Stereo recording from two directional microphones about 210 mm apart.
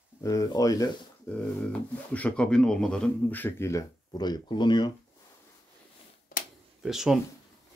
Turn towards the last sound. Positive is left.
turn(degrees=0)  # may be behind; listen again after turning